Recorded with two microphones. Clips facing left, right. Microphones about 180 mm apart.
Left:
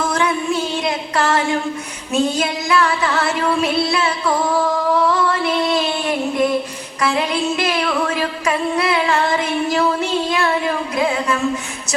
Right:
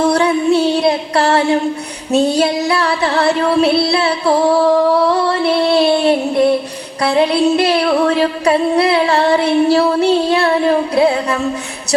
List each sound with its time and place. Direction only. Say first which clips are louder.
0.0 s music: right 7 dB; 35° right (ahead or behind)